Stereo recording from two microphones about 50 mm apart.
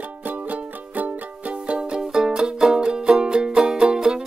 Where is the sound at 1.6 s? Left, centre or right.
Centre.